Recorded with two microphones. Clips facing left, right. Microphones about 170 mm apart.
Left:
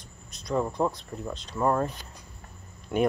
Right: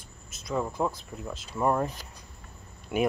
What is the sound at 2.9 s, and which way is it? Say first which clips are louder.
Speech: left 2 dB; 10° right (ahead or behind).